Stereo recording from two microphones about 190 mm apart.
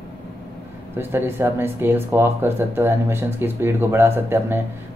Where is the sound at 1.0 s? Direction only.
10° right (ahead or behind).